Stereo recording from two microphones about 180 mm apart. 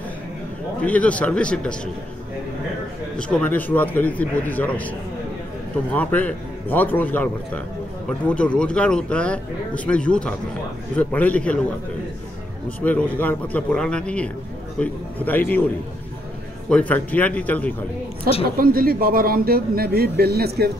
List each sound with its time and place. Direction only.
0.8 s a man's voice: 5° left (ahead or behind)
3.2 s a man's voice: 5° left (ahead or behind)
12.6 s a man's voice: 10° left (ahead or behind)
16.6 s a man's voice: 5° left (ahead or behind)
18.6 s a man's voice: 55° right (ahead or behind)